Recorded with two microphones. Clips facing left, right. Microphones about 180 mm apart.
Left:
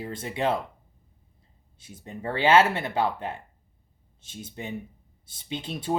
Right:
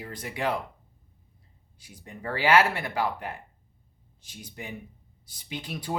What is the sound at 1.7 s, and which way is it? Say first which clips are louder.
Speech: left 5 dB; 25° left (ahead or behind).